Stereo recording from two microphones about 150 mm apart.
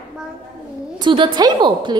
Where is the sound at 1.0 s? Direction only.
30° right (ahead or behind).